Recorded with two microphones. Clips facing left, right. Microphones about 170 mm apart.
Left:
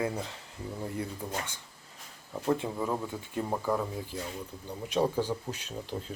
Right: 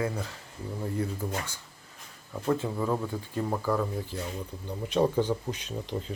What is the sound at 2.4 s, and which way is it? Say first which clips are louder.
Speech: right 2 dB; 10° left (ahead or behind).